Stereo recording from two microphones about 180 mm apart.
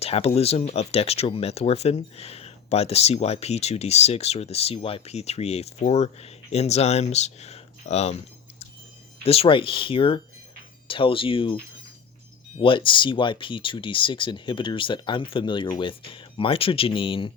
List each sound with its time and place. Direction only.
0.0 s speech: 35° left (ahead or behind)
12.6 s speech: 30° left (ahead or behind)